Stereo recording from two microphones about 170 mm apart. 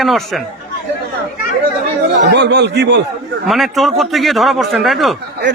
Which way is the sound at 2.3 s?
90° right.